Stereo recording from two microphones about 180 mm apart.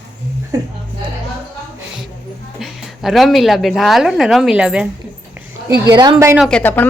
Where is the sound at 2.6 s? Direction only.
Centre (ahead or behind).